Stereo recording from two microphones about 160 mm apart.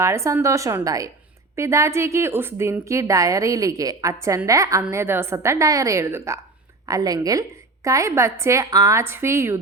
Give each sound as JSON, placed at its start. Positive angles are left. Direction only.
{"t": 0.0, "sound": "a woman's voice", "side_deg": -20}